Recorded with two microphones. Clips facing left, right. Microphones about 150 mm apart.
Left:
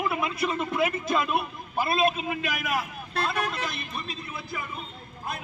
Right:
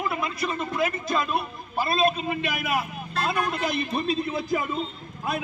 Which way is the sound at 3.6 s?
40° right (ahead or behind).